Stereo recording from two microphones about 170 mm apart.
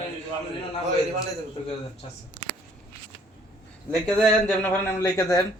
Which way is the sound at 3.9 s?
Centre (ahead or behind).